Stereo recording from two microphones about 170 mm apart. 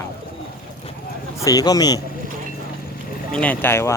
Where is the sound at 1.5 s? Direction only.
20° left (ahead or behind).